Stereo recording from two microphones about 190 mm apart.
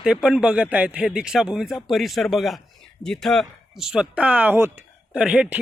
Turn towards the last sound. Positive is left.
turn(degrees=-5)  # may be behind; listen again after turning